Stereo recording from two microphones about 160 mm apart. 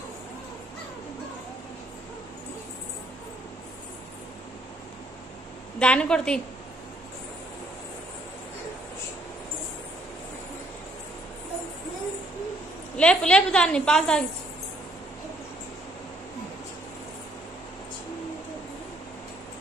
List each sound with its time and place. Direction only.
5.8 s a woman's voice: 5° left (ahead or behind)
12.9 s a woman's voice: 5° left (ahead or behind)